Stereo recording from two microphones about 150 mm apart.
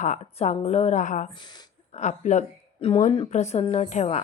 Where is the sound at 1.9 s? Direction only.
50° left (ahead or behind).